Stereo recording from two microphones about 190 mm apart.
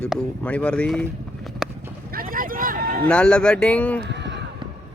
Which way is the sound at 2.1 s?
50° right (ahead or behind).